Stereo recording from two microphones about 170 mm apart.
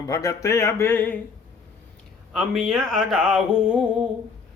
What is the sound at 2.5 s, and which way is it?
Speech, centre (ahead or behind).